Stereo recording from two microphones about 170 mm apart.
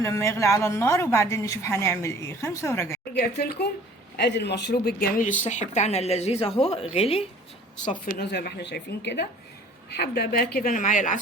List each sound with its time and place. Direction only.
0.0 s a woman's voice: 15° left (ahead or behind)
3.2 s speech: 70° left (ahead or behind)
4.2 s speech: 85° left; by 5.2 s 65° left (ahead or behind)
5.4 s speech: 45° left (ahead or behind)
8.2 s speech: 75° left (ahead or behind)
9.9 s a woman's voice: 75° left (ahead or behind); by 11.2 s 50° left (ahead or behind)